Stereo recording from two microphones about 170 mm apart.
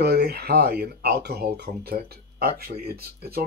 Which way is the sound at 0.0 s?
75° right (ahead or behind).